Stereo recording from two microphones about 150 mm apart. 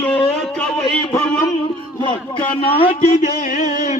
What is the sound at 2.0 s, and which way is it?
Speech, 30° left (ahead or behind).